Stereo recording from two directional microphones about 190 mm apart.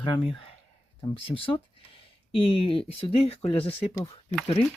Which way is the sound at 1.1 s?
30° left (ahead or behind).